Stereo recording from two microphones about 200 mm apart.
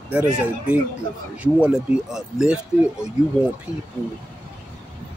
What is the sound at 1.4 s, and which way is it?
Speech, 5° right (ahead or behind).